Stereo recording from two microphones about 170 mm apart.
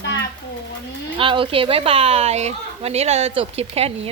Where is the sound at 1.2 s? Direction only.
30° right (ahead or behind).